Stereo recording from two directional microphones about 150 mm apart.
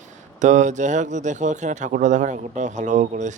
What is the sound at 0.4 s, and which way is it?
A man's voice, 55° right (ahead or behind).